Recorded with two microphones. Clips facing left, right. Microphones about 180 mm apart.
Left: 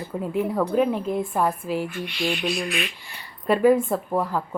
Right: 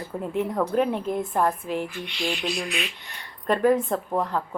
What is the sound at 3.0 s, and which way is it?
Speech, 5° left (ahead or behind).